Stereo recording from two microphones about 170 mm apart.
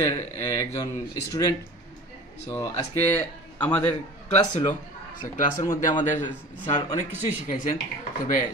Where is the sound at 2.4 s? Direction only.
15° left (ahead or behind).